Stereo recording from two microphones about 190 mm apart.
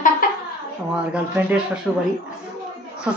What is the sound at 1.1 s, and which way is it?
Speech, 5° right (ahead or behind).